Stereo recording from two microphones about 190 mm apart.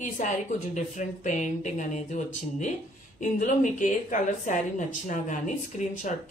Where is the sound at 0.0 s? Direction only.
40° left (ahead or behind).